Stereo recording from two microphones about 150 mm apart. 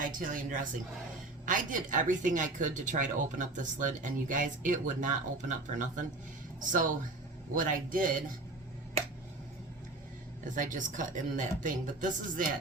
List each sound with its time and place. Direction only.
0.2 s a woman's voice: 65° right (ahead or behind)
10.5 s a woman's voice: 60° right (ahead or behind)